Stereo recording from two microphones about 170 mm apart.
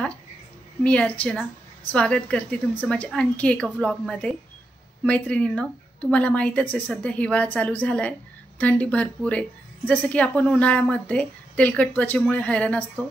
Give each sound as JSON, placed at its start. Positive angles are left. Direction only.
{"t": 0.8, "sound": "a woman's voice", "side_deg": 10}